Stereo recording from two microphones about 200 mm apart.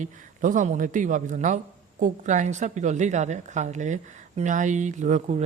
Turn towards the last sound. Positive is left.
turn(degrees=-35)  # may be behind; listen again after turning